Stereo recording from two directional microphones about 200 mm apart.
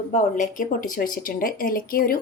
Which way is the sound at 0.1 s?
40° left (ahead or behind).